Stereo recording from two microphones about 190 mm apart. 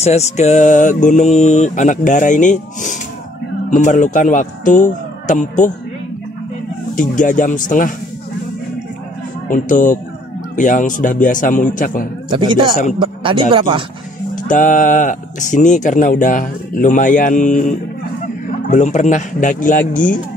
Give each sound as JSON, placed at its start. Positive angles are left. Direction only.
{"t": 0.0, "sound": "speech", "side_deg": 35}
{"t": 7.0, "sound": "speech", "side_deg": 45}
{"t": 9.5, "sound": "speech", "side_deg": 45}
{"t": 12.3, "sound": "speech", "side_deg": -25}
{"t": 14.3, "sound": "speech", "side_deg": 45}